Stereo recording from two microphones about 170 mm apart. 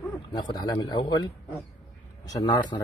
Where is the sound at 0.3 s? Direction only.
25° left (ahead or behind).